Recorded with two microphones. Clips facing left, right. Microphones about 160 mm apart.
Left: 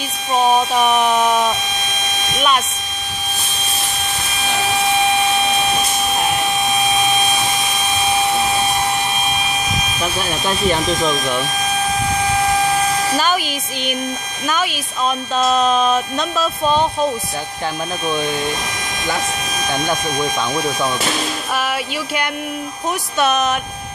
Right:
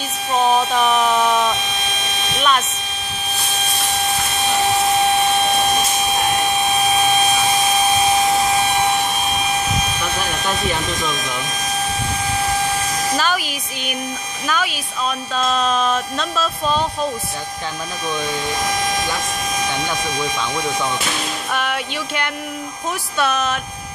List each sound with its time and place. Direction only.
0.6 s a sound: 15° left (ahead or behind)
11.1 s speech: 55° left (ahead or behind)
13.1 s a woman's voice: 20° left (ahead or behind)
21.5 s music: 10° left (ahead or behind)
23.1 s speech: 20° left (ahead or behind)